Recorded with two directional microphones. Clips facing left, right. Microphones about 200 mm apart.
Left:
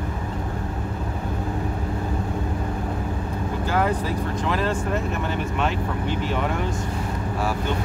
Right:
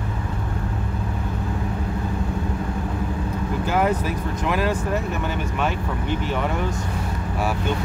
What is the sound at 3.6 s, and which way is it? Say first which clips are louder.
Vehicle: right 1 dB; 15° right (ahead or behind).